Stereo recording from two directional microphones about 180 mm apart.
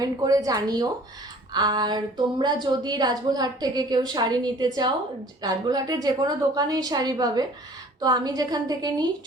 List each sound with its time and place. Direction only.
0.0 s a woman's voice: 20° right (ahead or behind)